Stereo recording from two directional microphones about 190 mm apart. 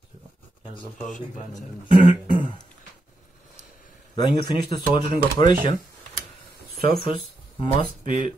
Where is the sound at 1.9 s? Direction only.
25° left (ahead or behind).